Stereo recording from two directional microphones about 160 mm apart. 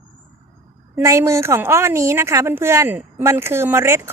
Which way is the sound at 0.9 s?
20° right (ahead or behind).